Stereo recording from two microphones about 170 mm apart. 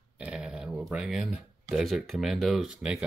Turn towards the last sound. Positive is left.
turn(degrees=-5)  # may be behind; listen again after turning